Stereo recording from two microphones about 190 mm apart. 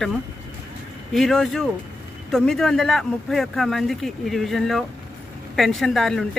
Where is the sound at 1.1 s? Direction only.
Centre (ahead or behind).